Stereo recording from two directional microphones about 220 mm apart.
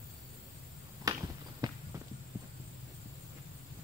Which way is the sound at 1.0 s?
15° right (ahead or behind).